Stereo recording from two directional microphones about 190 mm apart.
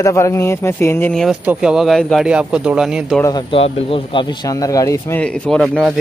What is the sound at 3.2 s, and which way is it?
Speech, 25° left (ahead or behind).